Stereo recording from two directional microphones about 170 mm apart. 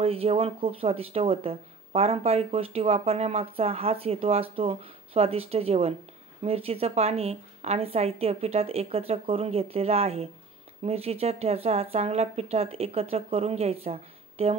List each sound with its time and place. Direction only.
0.0 s speech: 35° right (ahead or behind)